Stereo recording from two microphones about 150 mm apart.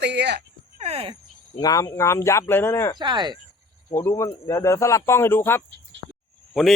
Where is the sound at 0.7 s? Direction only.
45° right (ahead or behind).